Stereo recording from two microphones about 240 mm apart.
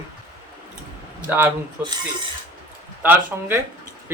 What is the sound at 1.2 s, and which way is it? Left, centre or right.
Speech, centre.